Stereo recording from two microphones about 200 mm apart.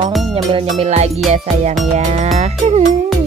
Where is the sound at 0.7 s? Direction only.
35° right (ahead or behind).